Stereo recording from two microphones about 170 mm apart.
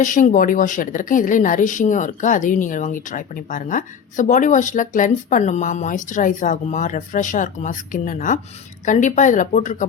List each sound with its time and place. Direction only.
0.0 s a woman's voice: 50° left (ahead or behind)